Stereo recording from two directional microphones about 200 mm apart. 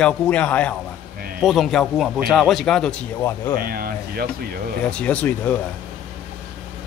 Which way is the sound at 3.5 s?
45° right (ahead or behind).